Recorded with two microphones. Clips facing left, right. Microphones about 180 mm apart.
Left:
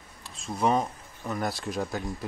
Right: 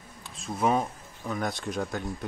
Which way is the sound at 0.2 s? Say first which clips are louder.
Even; centre (ahead or behind).